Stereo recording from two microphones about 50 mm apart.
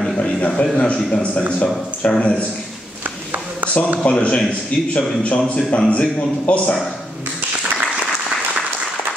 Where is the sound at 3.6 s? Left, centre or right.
Right.